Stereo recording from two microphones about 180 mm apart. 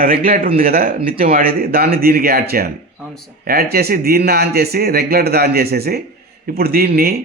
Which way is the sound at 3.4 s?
55° right (ahead or behind).